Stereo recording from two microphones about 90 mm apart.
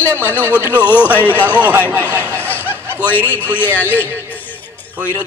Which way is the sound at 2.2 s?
25° right (ahead or behind).